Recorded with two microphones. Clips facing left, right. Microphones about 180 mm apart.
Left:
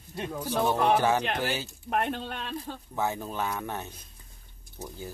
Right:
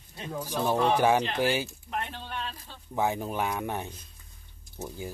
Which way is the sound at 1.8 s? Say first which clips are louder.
Left 6 dB; 60° left (ahead or behind).